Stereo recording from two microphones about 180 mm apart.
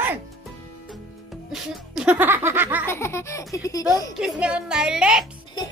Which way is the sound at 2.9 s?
15° left (ahead or behind).